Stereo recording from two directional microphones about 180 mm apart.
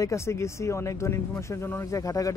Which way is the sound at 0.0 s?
15° left (ahead or behind).